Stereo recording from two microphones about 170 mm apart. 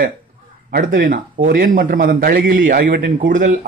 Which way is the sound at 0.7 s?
60° right (ahead or behind).